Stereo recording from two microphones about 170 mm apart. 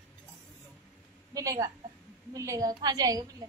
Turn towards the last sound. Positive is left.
turn(degrees=-20)  # may be behind; listen again after turning